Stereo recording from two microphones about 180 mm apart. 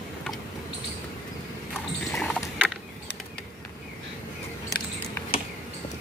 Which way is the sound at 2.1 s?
Centre (ahead or behind).